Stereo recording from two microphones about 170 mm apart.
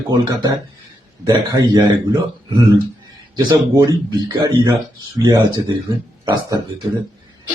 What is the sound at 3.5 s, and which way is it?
Speech, 25° right (ahead or behind).